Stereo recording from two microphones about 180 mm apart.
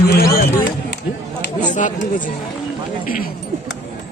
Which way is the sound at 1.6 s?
45° left (ahead or behind).